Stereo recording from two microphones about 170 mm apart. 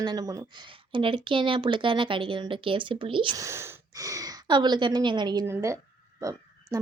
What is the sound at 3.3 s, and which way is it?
A woman's voice, 15° right (ahead or behind).